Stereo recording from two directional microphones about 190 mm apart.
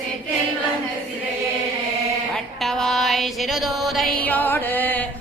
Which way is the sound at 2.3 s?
Centre (ahead or behind).